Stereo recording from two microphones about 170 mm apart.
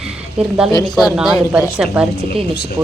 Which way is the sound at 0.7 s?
25° left (ahead or behind).